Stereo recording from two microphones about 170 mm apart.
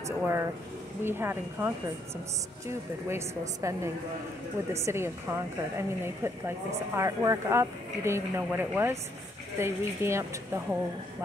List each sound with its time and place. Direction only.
0.0 s a woman's voice: 15° right (ahead or behind)